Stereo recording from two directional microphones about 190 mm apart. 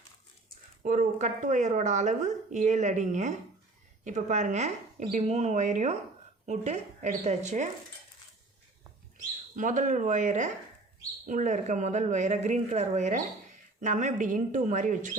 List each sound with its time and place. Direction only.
0.8 s speech: 40° right (ahead or behind)
9.1 s speech: 45° right (ahead or behind)